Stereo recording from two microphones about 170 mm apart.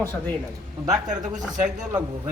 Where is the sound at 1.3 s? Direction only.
5° right (ahead or behind).